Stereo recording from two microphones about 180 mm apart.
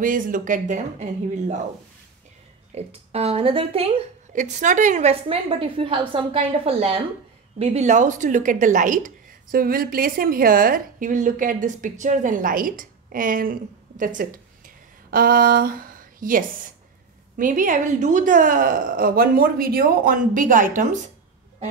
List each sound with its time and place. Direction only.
0.0 s a woman's voice: 50° right (ahead or behind)
2.7 s a woman's voice: 35° right (ahead or behind)